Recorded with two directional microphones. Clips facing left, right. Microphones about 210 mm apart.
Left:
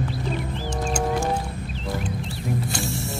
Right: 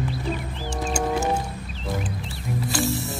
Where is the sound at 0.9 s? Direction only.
5° right (ahead or behind).